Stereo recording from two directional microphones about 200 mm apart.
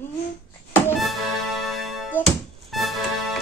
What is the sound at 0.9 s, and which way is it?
Music, centre (ahead or behind).